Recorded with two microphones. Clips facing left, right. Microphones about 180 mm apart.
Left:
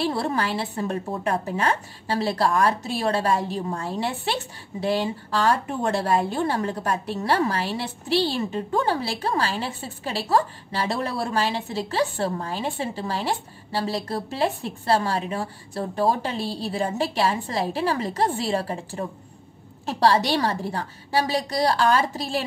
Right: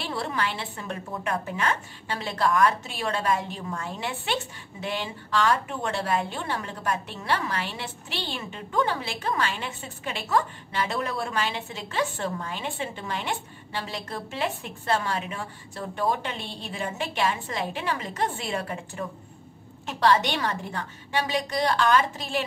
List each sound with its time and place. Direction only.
0.0 s a woman's voice: 35° left (ahead or behind)